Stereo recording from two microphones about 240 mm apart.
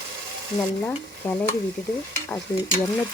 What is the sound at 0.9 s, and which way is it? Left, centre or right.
Stir, centre.